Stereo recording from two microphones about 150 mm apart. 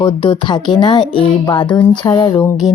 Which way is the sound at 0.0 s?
30° left (ahead or behind).